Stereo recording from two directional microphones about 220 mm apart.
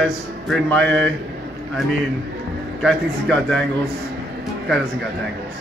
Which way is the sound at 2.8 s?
Centre (ahead or behind).